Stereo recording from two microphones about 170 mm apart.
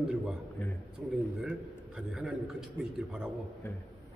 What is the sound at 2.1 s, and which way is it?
Speech, 5° right (ahead or behind).